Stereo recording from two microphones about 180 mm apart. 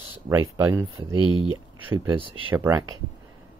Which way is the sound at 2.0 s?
25° right (ahead or behind).